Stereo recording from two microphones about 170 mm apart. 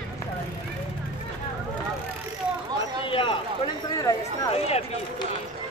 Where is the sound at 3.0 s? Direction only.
30° left (ahead or behind).